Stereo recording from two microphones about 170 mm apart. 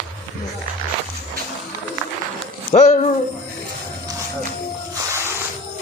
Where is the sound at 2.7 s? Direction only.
40° left (ahead or behind).